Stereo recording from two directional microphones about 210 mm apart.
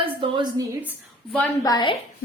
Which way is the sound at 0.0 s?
25° right (ahead or behind).